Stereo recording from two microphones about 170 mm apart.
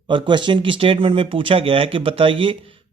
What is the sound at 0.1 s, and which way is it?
Speech, 30° right (ahead or behind).